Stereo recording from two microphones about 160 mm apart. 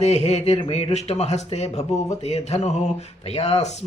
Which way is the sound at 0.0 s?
40° left (ahead or behind).